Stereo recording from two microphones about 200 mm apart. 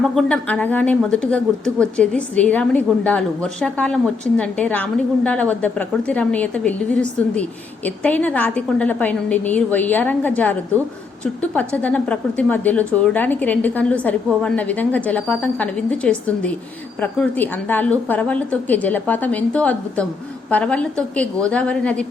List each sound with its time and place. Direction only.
0.0 s a woman's voice: 5° left (ahead or behind)